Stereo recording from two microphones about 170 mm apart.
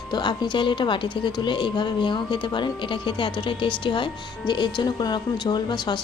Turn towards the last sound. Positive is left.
turn(degrees=25)  # may be behind; listen again after turning